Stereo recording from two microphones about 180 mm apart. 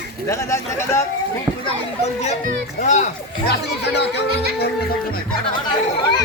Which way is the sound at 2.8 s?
40° left (ahead or behind).